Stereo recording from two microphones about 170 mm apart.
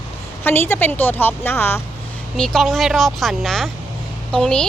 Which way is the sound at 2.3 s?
Centre (ahead or behind).